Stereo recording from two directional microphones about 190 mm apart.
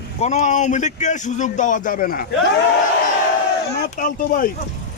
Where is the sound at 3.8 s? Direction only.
45° left (ahead or behind).